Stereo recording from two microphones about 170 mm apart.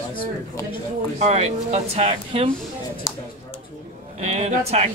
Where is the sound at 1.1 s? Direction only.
40° right (ahead or behind).